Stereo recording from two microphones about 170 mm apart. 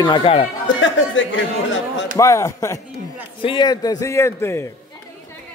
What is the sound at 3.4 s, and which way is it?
A man's voice, 30° left (ahead or behind).